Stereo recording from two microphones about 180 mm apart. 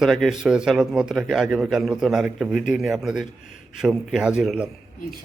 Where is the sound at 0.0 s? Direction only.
Centre (ahead or behind).